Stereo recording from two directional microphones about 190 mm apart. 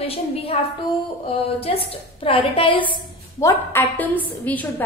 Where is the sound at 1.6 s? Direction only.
30° left (ahead or behind).